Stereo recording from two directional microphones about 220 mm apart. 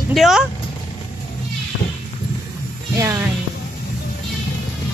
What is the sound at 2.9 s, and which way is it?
Speech, 10° right (ahead or behind).